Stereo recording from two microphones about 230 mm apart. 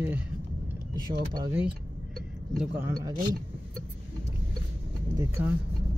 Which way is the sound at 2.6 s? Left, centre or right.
Centre.